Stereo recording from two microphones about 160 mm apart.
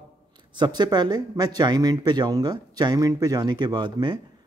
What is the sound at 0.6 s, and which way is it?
Speech, 25° right (ahead or behind).